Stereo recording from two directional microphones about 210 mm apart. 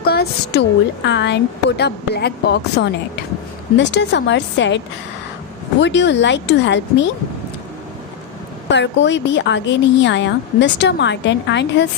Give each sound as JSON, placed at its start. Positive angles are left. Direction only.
{"t": 0.0, "sound": "a sound", "side_deg": 50}
{"t": 1.0, "sound": "a woman's voice", "side_deg": 55}
{"t": 5.8, "sound": "a woman's voice", "side_deg": 60}
{"t": 8.7, "sound": "a woman's voice", "side_deg": 60}